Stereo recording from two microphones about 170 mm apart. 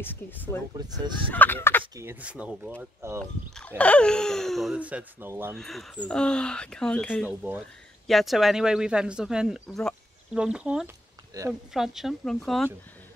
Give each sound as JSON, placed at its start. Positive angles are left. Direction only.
{"t": 0.0, "sound": "speech", "side_deg": 10}
{"t": 0.7, "sound": "speech", "side_deg": -25}
{"t": 1.3, "sound": "speech", "side_deg": 10}
{"t": 2.0, "sound": "speech", "side_deg": -10}
{"t": 3.2, "sound": "speech", "side_deg": 10}
{"t": 5.5, "sound": "speech", "side_deg": 0}
{"t": 7.2, "sound": "speech", "side_deg": -10}
{"t": 11.3, "sound": "speech", "side_deg": -20}
{"t": 11.7, "sound": "speech", "side_deg": 0}